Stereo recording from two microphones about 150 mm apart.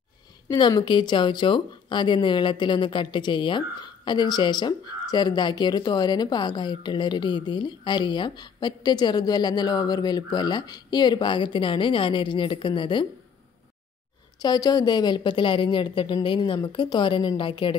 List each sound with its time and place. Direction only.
0.5 s a woman's voice: 30° left (ahead or behind)
14.4 s a woman's voice: 25° left (ahead or behind)